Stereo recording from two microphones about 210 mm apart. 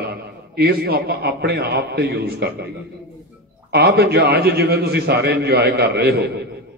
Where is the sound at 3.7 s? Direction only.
50° right (ahead or behind).